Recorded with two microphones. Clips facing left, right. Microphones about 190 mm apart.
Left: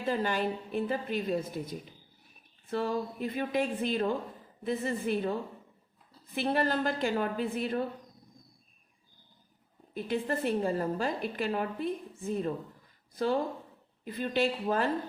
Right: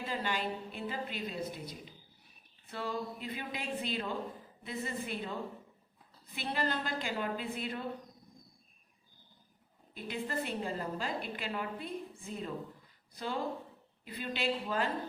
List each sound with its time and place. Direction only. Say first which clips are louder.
0.1 s a woman's voice: left 7 dB; 45° left (ahead or behind)
6.3 s a woman's voice: left 7 dB; 50° left (ahead or behind)
9.9 s a woman's voice: left 6 dB; 45° left (ahead or behind)